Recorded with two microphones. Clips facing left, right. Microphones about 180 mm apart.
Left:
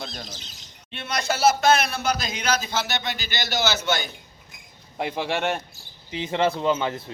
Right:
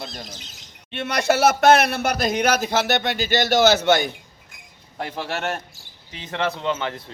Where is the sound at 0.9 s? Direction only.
65° right (ahead or behind).